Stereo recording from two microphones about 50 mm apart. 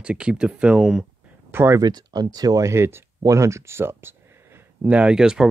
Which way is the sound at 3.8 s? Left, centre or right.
Right.